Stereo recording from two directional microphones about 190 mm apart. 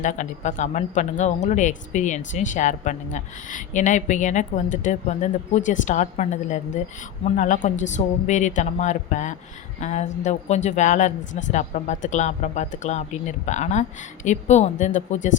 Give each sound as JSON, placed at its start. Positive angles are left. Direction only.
{"t": 0.0, "sound": "speech", "side_deg": 40}